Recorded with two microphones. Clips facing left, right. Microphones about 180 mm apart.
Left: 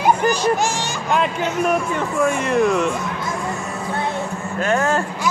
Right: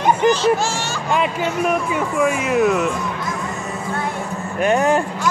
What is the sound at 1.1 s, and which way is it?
Speech, centre (ahead or behind).